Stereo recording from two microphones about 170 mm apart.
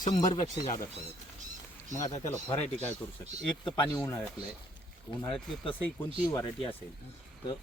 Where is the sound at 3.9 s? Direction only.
15° left (ahead or behind).